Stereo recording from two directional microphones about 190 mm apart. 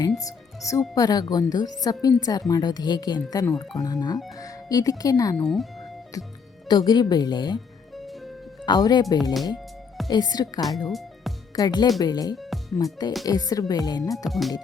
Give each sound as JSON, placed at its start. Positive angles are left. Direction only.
{"t": 0.2, "sound": "speech", "side_deg": 15}
{"t": 7.9, "sound": "music", "side_deg": 0}
{"t": 8.6, "sound": "speech", "side_deg": 20}
{"t": 10.8, "sound": "music", "side_deg": 0}
{"t": 11.5, "sound": "speech", "side_deg": 20}
{"t": 14.3, "sound": "speech", "side_deg": 0}